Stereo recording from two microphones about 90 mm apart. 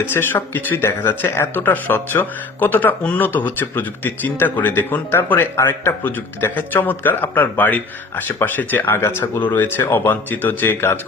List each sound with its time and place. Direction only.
0.1 s speech: 25° left (ahead or behind)